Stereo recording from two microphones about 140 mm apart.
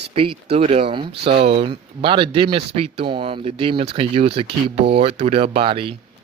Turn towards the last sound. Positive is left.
turn(degrees=-35)  # may be behind; listen again after turning